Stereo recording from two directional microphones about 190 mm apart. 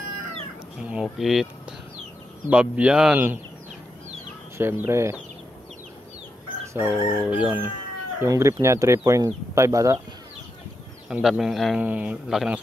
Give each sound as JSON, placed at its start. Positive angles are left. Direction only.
{"t": 0.8, "sound": "speech", "side_deg": 0}
{"t": 4.6, "sound": "speech", "side_deg": -10}
{"t": 6.7, "sound": "speech", "side_deg": -10}
{"t": 11.1, "sound": "a man's voice", "side_deg": -5}